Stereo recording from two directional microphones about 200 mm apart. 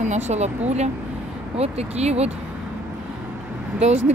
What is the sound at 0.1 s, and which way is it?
Speech, 35° right (ahead or behind).